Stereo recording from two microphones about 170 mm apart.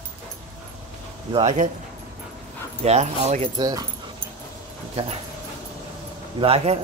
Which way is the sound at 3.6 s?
20° right (ahead or behind).